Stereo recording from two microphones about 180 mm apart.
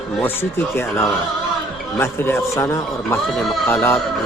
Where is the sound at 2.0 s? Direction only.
15° left (ahead or behind).